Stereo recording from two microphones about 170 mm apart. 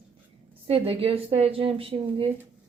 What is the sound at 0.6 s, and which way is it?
A woman's voice, 35° right (ahead or behind).